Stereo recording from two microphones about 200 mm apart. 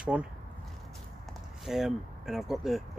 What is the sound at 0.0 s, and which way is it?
Speech, 5° right (ahead or behind).